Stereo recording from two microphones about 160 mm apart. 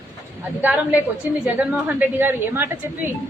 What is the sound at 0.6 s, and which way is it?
A woman's voice, 10° right (ahead or behind).